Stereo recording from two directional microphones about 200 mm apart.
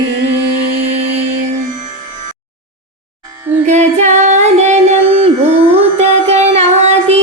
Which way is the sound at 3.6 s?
35° right (ahead or behind).